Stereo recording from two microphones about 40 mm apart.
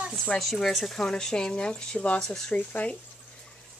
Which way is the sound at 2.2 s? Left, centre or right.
Centre.